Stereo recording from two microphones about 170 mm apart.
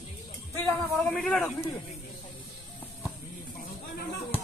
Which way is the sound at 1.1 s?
Centre (ahead or behind).